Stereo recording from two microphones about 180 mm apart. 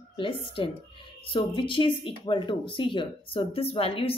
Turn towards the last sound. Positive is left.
turn(degrees=30)  # may be behind; listen again after turning